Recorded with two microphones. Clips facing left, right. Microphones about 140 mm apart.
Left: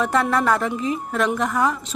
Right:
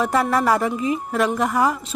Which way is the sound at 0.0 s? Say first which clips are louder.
Right 1 dB; 5° right (ahead or behind).